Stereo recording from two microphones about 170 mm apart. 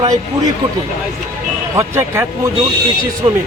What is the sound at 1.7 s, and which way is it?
Speech, 15° right (ahead or behind).